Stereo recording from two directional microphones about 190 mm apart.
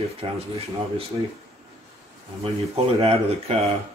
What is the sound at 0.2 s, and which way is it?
Speech, 30° right (ahead or behind).